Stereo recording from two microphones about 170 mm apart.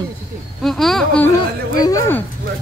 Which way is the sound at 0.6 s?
Centre (ahead or behind).